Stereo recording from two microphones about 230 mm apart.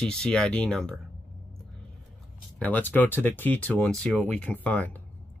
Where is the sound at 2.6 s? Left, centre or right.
Centre.